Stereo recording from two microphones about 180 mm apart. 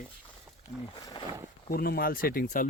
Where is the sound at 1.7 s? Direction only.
55° left (ahead or behind).